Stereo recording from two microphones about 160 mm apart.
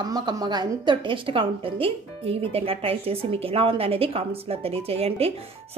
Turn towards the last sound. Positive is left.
turn(degrees=-40)  # may be behind; listen again after turning